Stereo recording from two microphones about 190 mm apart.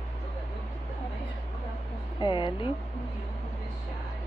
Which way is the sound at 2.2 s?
25° left (ahead or behind).